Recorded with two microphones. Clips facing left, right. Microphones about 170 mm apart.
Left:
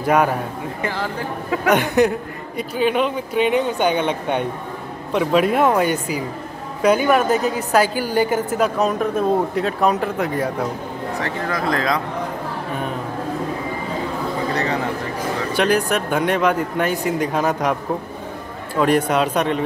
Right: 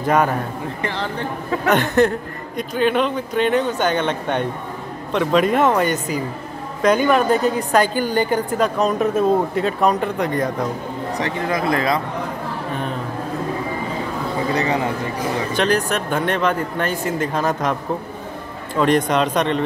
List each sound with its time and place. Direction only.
0.0 s a man's voice: 10° left (ahead or behind)
1.5 s a man's voice: 10° left (ahead or behind)
11.1 s speech: 15° right (ahead or behind)
15.5 s a man's voice: 10° left (ahead or behind)
18.8 s a man's voice: 10° left (ahead or behind)